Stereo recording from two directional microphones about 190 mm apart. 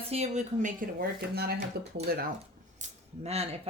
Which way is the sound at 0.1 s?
35° right (ahead or behind).